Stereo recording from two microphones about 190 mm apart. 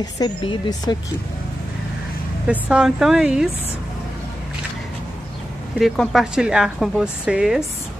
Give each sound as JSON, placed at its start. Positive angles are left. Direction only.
{"t": 0.0, "sound": "speech", "side_deg": 20}
{"t": 2.4, "sound": "a woman's voice", "side_deg": -5}
{"t": 5.8, "sound": "a woman's voice", "side_deg": 0}